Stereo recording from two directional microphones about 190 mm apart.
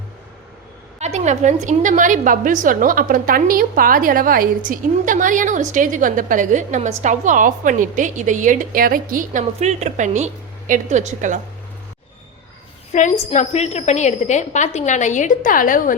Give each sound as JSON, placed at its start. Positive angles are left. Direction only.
{"t": 0.9, "sound": "a woman's voice", "side_deg": -35}
{"t": 12.9, "sound": "a woman's voice", "side_deg": 40}